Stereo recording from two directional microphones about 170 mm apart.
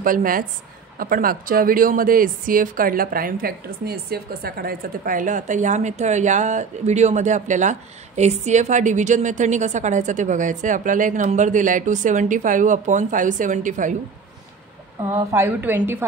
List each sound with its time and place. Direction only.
0.0 s a woman's voice: 55° right (ahead or behind)
15.0 s a woman's voice: 15° right (ahead or behind)